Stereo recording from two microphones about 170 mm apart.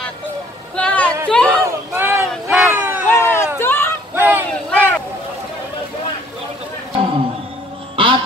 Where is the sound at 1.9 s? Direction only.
15° right (ahead or behind).